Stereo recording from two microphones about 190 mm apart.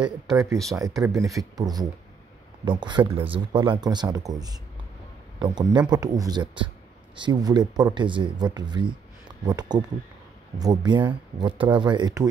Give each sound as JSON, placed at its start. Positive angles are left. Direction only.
{"t": 0.7, "sound": "speech", "side_deg": -10}